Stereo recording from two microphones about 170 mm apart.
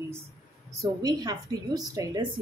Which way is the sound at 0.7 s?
20° right (ahead or behind).